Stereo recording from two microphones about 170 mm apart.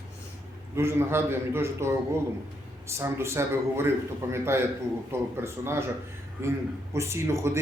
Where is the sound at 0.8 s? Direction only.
15° right (ahead or behind).